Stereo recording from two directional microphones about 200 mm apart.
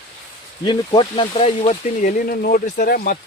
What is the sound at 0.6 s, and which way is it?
Speech, 25° left (ahead or behind).